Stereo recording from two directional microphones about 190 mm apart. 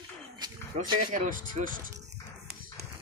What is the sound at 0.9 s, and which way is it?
Speech, 45° right (ahead or behind).